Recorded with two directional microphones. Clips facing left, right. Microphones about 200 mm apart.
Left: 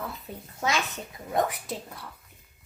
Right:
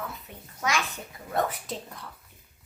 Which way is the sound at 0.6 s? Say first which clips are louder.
Left 1 dB; 25° left (ahead or behind).